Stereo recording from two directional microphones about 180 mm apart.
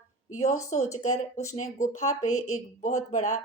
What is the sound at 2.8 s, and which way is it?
Speech, 40° left (ahead or behind).